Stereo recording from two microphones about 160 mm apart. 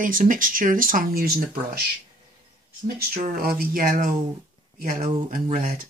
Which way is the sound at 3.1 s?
65° right (ahead or behind).